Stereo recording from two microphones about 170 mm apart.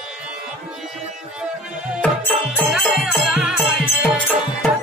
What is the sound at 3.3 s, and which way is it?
Music, 5° right (ahead or behind).